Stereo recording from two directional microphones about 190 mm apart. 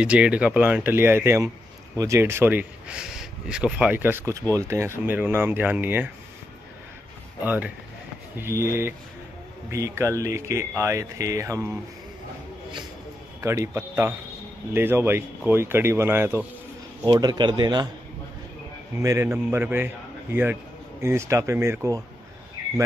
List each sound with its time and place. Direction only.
0.0 s speech: 5° right (ahead or behind)
7.4 s speech: 10° right (ahead or behind)
13.4 s speech: 15° right (ahead or behind)
19.0 s speech: 15° right (ahead or behind)